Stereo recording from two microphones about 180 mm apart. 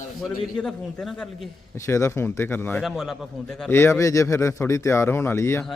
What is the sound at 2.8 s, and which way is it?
A man's voice, centre (ahead or behind).